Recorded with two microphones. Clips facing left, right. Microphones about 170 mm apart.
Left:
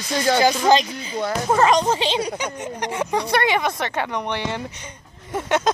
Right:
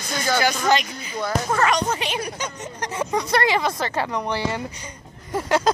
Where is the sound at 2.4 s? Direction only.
15° left (ahead or behind).